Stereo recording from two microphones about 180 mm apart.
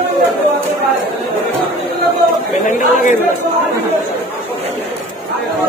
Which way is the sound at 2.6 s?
45° left (ahead or behind).